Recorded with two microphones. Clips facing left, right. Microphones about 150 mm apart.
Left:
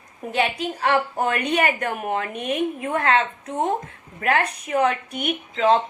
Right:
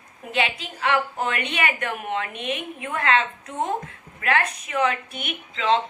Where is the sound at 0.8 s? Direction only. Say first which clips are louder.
Left 2 dB; 35° left (ahead or behind).